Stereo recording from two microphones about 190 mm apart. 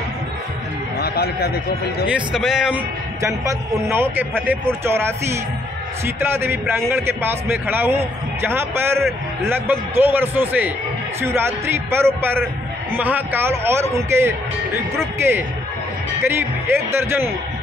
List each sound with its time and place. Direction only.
0.9 s a sound: 55° left (ahead or behind)
2.1 s speech: 5° right (ahead or behind)
3.2 s a man's voice: 15° right (ahead or behind)